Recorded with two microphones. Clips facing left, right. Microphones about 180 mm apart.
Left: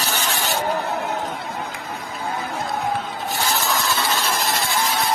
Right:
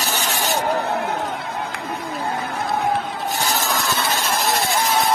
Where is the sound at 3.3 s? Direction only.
45° right (ahead or behind).